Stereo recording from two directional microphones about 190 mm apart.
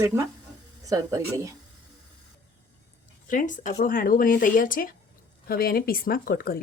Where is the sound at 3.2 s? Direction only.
45° left (ahead or behind).